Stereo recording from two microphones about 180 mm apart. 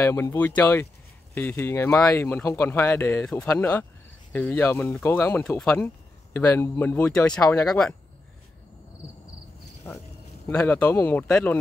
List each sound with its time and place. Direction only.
0.0 s speech: 15° left (ahead or behind)
10.6 s speech: 10° left (ahead or behind)